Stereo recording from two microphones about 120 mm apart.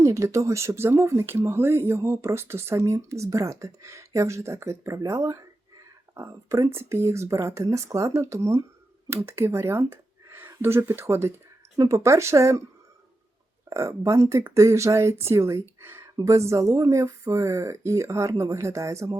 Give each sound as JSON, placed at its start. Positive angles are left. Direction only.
{"t": 0.0, "sound": "speech", "side_deg": -25}
{"t": 13.7, "sound": "speech", "side_deg": -25}